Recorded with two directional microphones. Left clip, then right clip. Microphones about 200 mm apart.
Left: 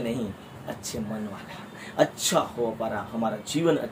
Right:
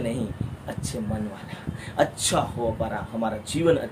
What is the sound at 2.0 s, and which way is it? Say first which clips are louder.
Speech: even; 20° right (ahead or behind).